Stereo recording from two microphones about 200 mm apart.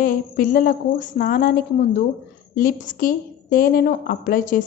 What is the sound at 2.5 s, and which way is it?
A woman's voice, 45° left (ahead or behind).